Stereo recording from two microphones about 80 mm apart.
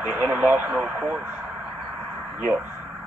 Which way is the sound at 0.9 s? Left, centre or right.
Centre.